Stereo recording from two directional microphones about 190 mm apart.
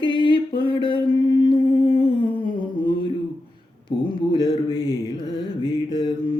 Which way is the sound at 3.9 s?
25° left (ahead or behind).